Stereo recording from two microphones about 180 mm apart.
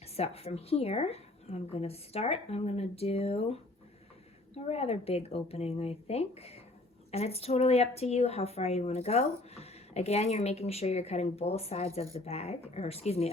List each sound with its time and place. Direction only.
0.0 s speech: 35° left (ahead or behind)